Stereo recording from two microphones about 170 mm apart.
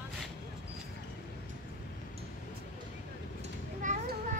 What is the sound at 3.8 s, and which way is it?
Children playing, 45° right (ahead or behind).